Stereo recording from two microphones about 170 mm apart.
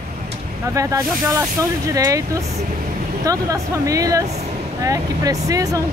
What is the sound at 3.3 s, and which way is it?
Speech, 20° right (ahead or behind).